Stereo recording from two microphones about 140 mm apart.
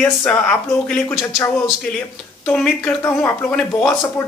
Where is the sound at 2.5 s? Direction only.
5° left (ahead or behind).